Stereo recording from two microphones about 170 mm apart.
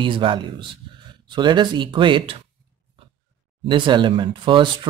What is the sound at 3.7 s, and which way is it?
Speech, 30° right (ahead or behind).